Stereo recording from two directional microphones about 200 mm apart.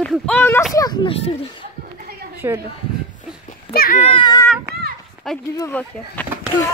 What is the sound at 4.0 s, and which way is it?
Speech, 25° left (ahead or behind).